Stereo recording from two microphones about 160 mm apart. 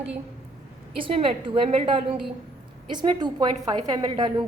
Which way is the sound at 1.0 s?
35° right (ahead or behind).